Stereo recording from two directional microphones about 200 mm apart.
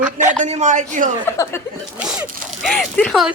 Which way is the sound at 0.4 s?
35° right (ahead or behind).